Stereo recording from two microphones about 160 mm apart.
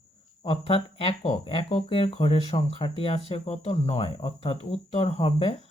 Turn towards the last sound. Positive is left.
turn(degrees=35)  # may be behind; listen again after turning